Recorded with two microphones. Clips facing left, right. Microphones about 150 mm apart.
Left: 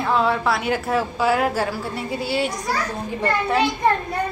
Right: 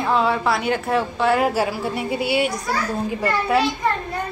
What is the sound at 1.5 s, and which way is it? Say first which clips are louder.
Speech: right 2 dB; 10° right (ahead or behind).